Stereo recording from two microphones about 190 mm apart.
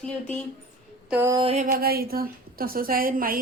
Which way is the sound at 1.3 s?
30° right (ahead or behind).